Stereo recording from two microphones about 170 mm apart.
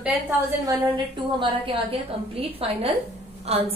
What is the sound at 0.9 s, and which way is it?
A woman's voice, 30° right (ahead or behind).